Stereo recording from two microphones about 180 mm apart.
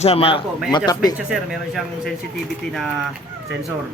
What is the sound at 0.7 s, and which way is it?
Speech, 25° left (ahead or behind).